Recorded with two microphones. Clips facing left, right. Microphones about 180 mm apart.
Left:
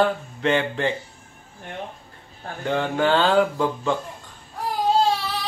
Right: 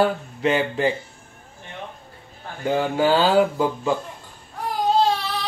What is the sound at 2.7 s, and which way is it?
Speech, 5° right (ahead or behind).